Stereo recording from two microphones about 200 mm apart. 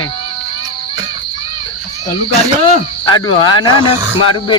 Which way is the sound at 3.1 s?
20° left (ahead or behind).